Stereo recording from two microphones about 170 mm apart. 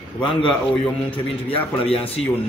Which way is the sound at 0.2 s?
30° left (ahead or behind).